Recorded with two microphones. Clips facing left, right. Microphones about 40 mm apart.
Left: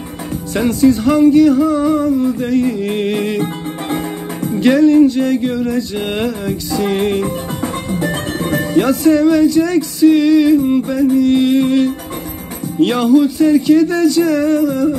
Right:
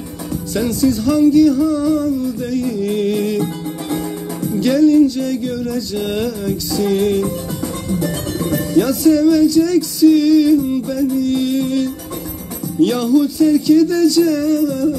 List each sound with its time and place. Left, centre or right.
0.6 s music: left